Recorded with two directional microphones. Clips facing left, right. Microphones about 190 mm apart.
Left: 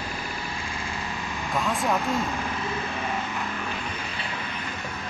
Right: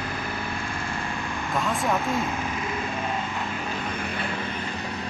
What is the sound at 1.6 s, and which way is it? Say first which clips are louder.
Speech: even; centre (ahead or behind).